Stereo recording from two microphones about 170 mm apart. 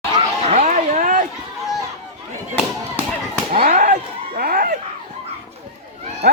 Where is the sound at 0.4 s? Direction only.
40° right (ahead or behind).